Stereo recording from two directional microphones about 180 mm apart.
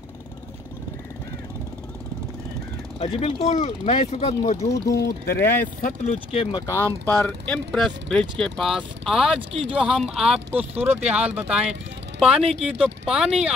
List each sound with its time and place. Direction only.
3.0 s speech: 30° left (ahead or behind)
5.0 s speech: 60° left (ahead or behind)
5.4 s speech: 10° left (ahead or behind)
5.8 s speech: 50° left (ahead or behind)
6.3 s speech: 30° left (ahead or behind); by 9.4 s centre (ahead or behind)
9.4 s speech: 35° right (ahead or behind)
9.7 s speech: 5° right (ahead or behind)